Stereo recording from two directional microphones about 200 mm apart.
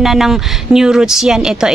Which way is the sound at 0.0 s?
Centre (ahead or behind).